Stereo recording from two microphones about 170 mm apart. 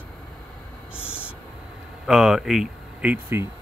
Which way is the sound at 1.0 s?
5° right (ahead or behind).